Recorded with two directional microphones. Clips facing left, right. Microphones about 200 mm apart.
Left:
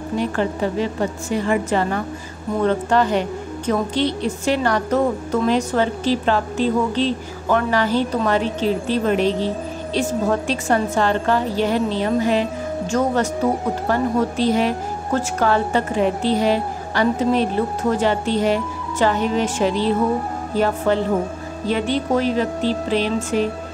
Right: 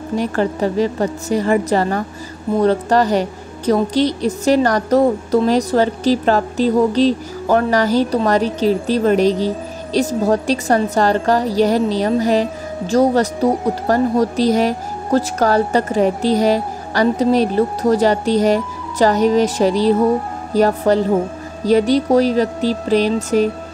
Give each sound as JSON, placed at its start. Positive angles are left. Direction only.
{"t": 0.2, "sound": "a woman's voice", "side_deg": -40}